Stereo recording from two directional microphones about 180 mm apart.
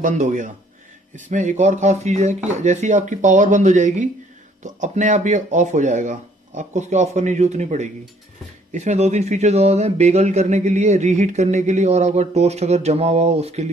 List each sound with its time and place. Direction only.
0.0 s a man's voice: 45° right (ahead or behind)